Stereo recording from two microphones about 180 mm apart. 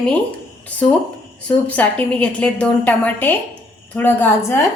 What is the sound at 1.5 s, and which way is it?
A woman's voice, 10° left (ahead or behind).